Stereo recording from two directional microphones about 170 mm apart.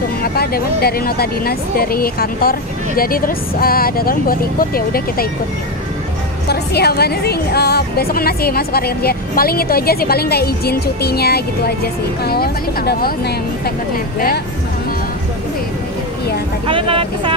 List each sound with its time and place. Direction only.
0.2 s a woman's voice: 65° left (ahead or behind)
6.5 s a woman's voice: 70° left (ahead or behind)
16.6 s speech: 30° right (ahead or behind)